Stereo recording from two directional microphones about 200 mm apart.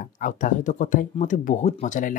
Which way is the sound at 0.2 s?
40° left (ahead or behind).